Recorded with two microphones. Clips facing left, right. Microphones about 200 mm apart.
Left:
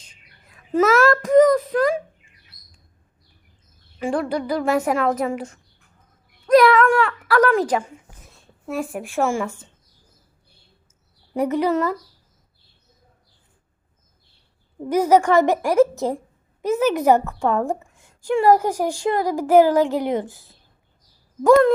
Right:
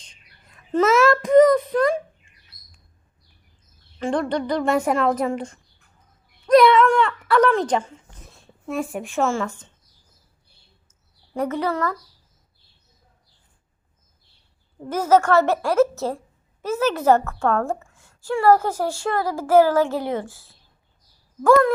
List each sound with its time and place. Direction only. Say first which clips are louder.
0.0 s a sound: left 1 dB; 5° left (ahead or behind)
4.0 s speech: even; 5° left (ahead or behind)
6.5 s a sound: even; centre (ahead or behind)
8.6 s a woman's voice: even; centre (ahead or behind)
11.3 s a woman's voice: left 4 dB; 15° left (ahead or behind)
14.8 s a woman's voice: left 2 dB; 15° left (ahead or behind)
21.4 s speech: left 2 dB; 20° left (ahead or behind)